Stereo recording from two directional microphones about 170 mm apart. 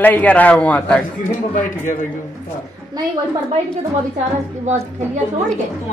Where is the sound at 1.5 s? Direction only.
50° left (ahead or behind).